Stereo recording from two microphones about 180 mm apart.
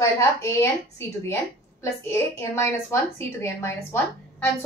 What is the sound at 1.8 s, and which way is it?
A woman's voice, 15° left (ahead or behind).